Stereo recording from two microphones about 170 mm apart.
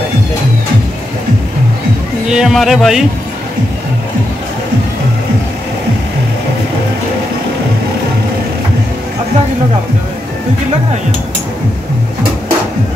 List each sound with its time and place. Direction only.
2.2 s a man's voice: 5° right (ahead or behind)